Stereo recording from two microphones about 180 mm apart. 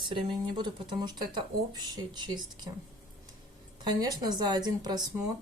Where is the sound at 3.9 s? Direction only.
20° right (ahead or behind).